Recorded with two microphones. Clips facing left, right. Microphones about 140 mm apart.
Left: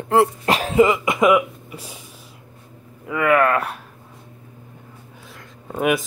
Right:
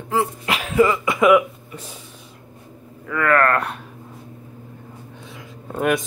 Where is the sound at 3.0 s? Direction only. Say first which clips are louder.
Left 1 dB; 15° left (ahead or behind).